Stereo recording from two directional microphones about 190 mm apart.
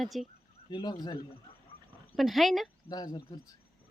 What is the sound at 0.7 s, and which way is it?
Speech, 20° left (ahead or behind).